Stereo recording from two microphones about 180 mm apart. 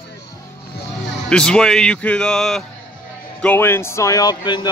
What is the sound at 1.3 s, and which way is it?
Speech, 5° left (ahead or behind).